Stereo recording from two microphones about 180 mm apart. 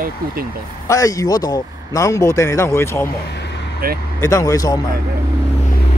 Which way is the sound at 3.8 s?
55° right (ahead or behind).